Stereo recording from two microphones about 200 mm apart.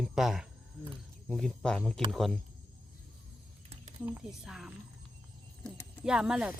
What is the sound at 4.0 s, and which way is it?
Speech, 10° right (ahead or behind).